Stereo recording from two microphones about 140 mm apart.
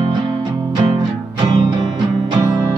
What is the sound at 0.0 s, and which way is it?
Music, 40° right (ahead or behind).